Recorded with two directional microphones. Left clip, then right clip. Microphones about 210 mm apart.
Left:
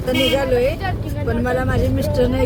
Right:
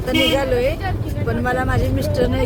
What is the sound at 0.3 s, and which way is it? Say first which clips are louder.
Speech: left 1 dB; 15° right (ahead or behind).